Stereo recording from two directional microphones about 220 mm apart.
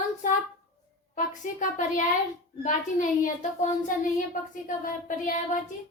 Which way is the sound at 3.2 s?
35° left (ahead or behind).